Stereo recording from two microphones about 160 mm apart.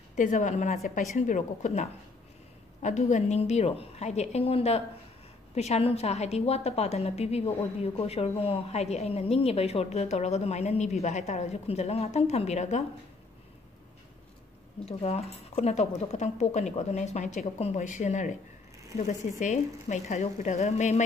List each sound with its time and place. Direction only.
0.1 s a woman's voice: 50° left (ahead or behind)
14.9 s a woman's voice: 40° left (ahead or behind)